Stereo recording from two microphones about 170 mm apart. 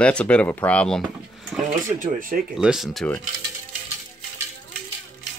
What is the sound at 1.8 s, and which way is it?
Speech, 55° right (ahead or behind).